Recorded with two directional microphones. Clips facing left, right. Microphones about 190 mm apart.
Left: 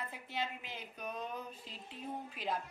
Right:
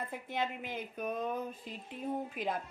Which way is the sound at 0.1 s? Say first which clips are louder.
Right 5 dB; 50° right (ahead or behind).